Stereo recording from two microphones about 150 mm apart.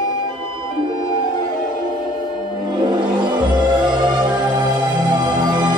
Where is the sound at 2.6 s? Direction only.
30° right (ahead or behind).